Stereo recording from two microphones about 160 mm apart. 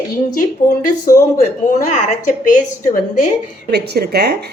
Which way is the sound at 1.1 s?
60° left (ahead or behind).